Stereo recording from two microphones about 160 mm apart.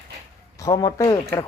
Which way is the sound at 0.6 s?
25° left (ahead or behind).